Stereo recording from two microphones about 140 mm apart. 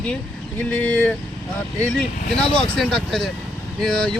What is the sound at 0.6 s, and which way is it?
Speech, 10° left (ahead or behind).